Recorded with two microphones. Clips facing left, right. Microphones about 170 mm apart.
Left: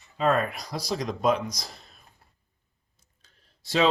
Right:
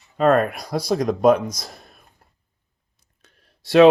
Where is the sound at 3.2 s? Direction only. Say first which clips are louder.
Right 7 dB; 65° right (ahead or behind).